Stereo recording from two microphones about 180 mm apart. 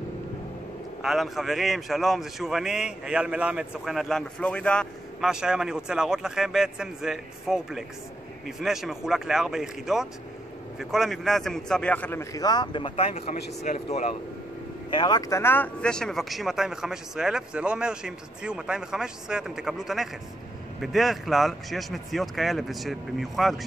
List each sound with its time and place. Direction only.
1.0 s a man's voice: centre (ahead or behind); by 14.1 s 35° left (ahead or behind)
14.9 s a man's voice: 25° left (ahead or behind); by 23.5 s centre (ahead or behind)